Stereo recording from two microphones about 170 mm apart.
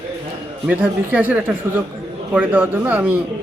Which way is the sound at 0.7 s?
10° right (ahead or behind).